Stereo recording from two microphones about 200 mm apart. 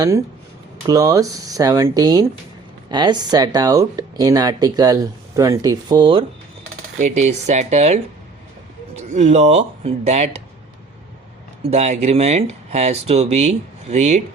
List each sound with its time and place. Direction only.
0.9 s speech: 15° right (ahead or behind)
7.0 s speech: 35° right (ahead or behind)
9.0 s speech: 35° right (ahead or behind)
11.7 s speech: 35° right (ahead or behind)